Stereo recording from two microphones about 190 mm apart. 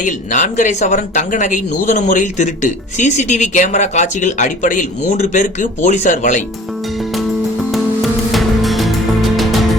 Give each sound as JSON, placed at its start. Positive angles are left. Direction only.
{"t": 0.0, "sound": "speech", "side_deg": 40}
{"t": 8.3, "sound": "music", "side_deg": 0}